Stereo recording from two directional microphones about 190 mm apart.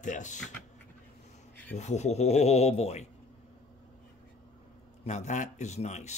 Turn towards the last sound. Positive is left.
turn(degrees=35)  # may be behind; listen again after turning